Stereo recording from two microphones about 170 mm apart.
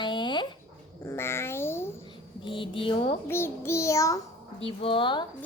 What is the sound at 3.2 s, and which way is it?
Speech, 15° left (ahead or behind).